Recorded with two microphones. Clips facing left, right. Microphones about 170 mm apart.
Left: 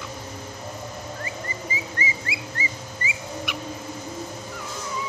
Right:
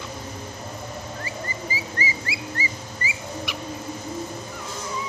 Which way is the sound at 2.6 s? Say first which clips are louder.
Right 1 dB; 35° right (ahead or behind).